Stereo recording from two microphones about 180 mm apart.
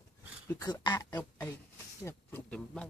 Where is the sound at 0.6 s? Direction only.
25° left (ahead or behind).